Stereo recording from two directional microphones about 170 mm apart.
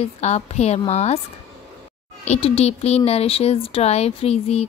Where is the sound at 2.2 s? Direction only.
35° left (ahead or behind).